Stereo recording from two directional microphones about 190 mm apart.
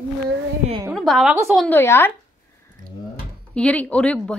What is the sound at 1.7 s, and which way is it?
Speech, 10° left (ahead or behind).